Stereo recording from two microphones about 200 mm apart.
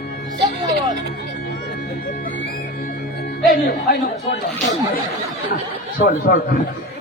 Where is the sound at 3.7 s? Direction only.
55° left (ahead or behind).